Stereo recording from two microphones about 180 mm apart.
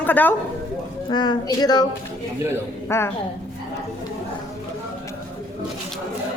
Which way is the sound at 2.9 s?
15° left (ahead or behind).